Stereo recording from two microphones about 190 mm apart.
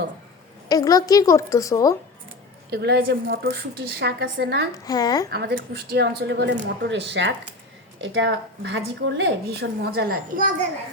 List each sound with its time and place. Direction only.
0.7 s a woman's voice: 20° left (ahead or behind)
2.6 s a woman's voice: 60° right (ahead or behind)
4.7 s a woman's voice: 20° left (ahead or behind)
5.3 s a woman's voice: 55° right (ahead or behind)